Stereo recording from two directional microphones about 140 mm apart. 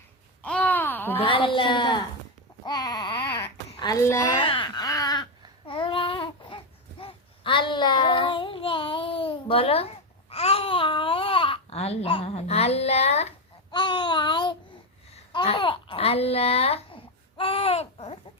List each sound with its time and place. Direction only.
0.4 s babbling: 10° left (ahead or behind)
1.2 s speech: 35° left (ahead or behind)
2.6 s baby cry: 30° left (ahead or behind)
4.0 s speech: 20° left (ahead or behind)
4.4 s babbling: 40° left (ahead or behind)
7.0 s child singing: 35° left (ahead or behind)
13.7 s a sound: 35° left (ahead or behind)
15.4 s babbling: 40° left (ahead or behind)